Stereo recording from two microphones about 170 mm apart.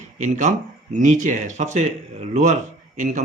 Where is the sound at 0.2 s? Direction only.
45° right (ahead or behind).